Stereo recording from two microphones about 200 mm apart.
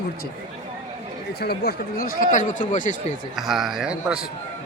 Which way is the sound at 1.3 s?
55° left (ahead or behind).